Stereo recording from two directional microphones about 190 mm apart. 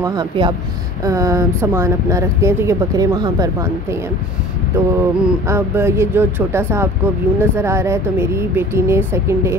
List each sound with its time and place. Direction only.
0.0 s a woman's voice: 20° right (ahead or behind)